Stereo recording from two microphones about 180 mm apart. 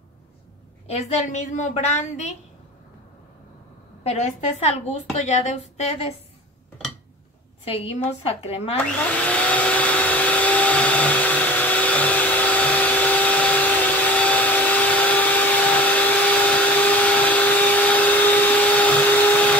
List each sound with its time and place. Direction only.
0.8 s a woman's voice: 40° left (ahead or behind)
4.0 s a woman's voice: 35° left (ahead or behind)
7.6 s a woman's voice: 35° left (ahead or behind)
8.9 s vacuum cleaner: 5° left (ahead or behind)